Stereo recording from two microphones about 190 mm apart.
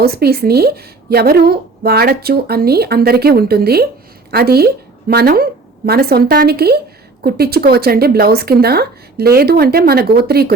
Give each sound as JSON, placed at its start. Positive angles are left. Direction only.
{"t": 0.0, "sound": "a woman's voice", "side_deg": -55}